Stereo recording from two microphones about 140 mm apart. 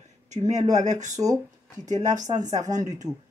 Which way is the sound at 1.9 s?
60° right (ahead or behind).